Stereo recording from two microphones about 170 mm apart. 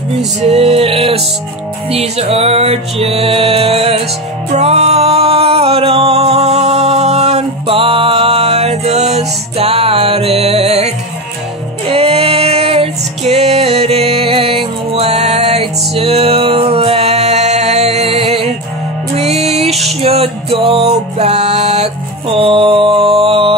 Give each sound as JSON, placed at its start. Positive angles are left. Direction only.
{"t": 0.4, "sound": "music", "side_deg": -40}